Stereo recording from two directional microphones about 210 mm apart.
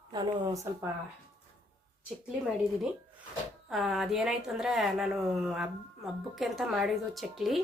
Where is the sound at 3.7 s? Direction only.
Centre (ahead or behind).